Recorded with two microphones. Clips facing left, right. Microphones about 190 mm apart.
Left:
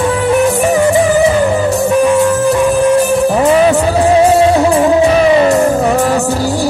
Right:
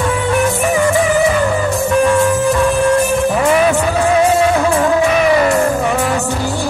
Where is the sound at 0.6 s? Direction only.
35° left (ahead or behind).